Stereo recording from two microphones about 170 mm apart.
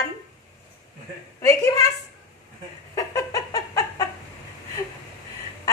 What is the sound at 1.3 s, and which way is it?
Speech, 20° left (ahead or behind).